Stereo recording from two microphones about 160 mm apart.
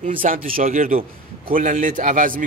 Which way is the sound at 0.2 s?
60° right (ahead or behind).